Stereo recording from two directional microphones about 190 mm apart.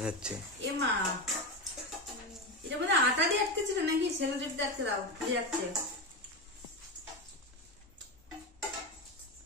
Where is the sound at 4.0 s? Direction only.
65° right (ahead or behind).